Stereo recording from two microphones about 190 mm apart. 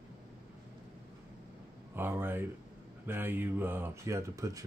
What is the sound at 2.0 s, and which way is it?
Speech, 10° right (ahead or behind).